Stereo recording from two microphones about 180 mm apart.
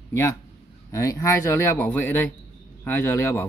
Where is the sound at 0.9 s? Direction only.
15° left (ahead or behind).